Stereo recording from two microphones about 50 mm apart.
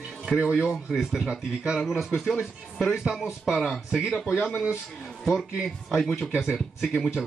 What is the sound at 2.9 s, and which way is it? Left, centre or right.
Speech, centre.